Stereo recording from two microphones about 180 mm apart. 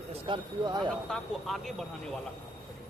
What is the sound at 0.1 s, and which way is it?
Speech, 25° right (ahead or behind).